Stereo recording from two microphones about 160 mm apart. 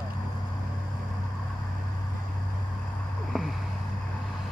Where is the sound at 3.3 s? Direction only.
Centre (ahead or behind).